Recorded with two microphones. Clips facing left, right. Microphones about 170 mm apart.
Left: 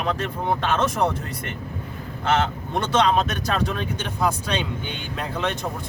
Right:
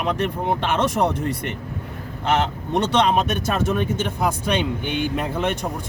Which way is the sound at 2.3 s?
20° right (ahead or behind).